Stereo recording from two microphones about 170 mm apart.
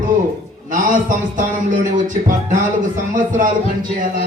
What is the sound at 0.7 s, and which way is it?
A man's voice, 50° right (ahead or behind).